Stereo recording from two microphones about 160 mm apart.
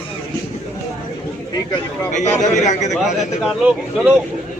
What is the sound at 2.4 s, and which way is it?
Speech, 50° left (ahead or behind).